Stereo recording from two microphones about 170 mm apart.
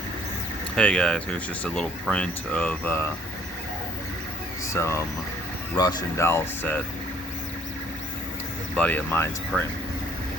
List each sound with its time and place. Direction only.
0.8 s speech: 5° left (ahead or behind)
4.7 s speech: 15° left (ahead or behind)
8.7 s speech: 10° left (ahead or behind)